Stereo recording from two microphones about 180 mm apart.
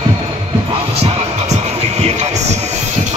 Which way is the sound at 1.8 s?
35° right (ahead or behind).